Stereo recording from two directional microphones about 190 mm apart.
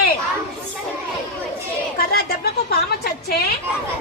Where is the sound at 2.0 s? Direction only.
55° left (ahead or behind).